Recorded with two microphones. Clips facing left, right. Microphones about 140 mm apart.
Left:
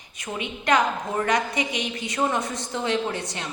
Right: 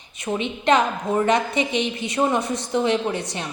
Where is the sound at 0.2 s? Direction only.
25° right (ahead or behind).